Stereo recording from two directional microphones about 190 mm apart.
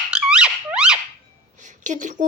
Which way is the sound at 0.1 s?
5° right (ahead or behind).